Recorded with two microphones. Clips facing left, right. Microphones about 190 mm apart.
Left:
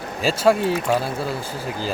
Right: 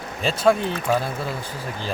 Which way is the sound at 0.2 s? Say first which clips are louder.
Left 1 dB; 5° left (ahead or behind).